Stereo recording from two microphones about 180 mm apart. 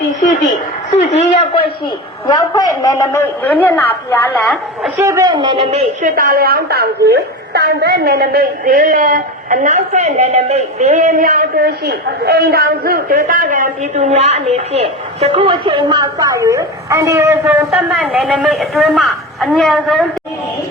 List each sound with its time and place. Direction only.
0.9 s speech: 35° left (ahead or behind)
2.2 s a man's voice: 20° left (ahead or behind)
4.9 s a man's voice: 15° right (ahead or behind)
6.0 s a woman's voice: 50° right (ahead or behind); by 20.1 s centre (ahead or behind)